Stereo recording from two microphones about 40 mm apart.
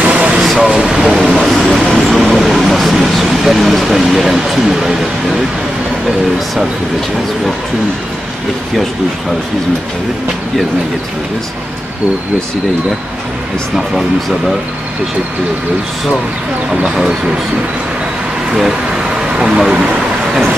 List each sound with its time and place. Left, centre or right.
0.0 s air conditioning: right
0.7 s vehicle: centre
1.1 s vehicle: centre
18.5 s speech: centre
19.3 s speech: right